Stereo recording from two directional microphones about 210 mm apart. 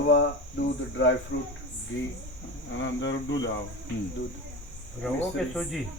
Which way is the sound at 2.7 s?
60° left (ahead or behind).